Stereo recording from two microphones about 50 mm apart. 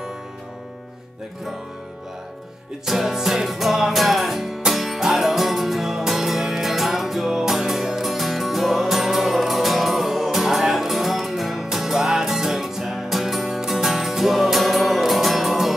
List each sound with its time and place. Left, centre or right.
2.8 s music: centre